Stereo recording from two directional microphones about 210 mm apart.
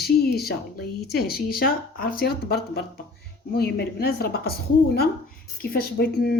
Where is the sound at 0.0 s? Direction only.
50° left (ahead or behind).